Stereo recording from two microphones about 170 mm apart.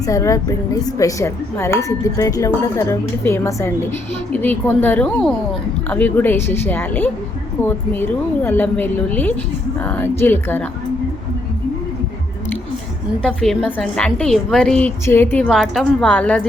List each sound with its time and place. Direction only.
0.0 s a woman's voice: 20° left (ahead or behind)
13.2 s a woman's voice: centre (ahead or behind)
15.4 s a woman's voice: centre (ahead or behind)